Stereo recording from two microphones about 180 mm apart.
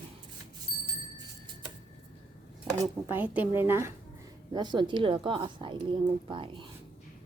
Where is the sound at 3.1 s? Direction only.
10° right (ahead or behind); by 6.6 s 25° right (ahead or behind).